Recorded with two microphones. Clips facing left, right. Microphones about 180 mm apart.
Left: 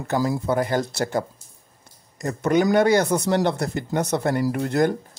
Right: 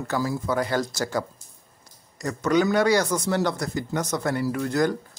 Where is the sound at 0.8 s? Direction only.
60° left (ahead or behind).